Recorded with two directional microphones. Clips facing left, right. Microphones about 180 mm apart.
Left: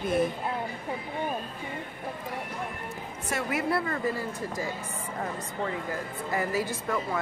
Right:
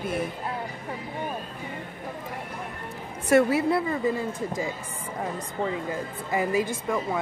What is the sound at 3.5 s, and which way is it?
Speech, 20° right (ahead or behind).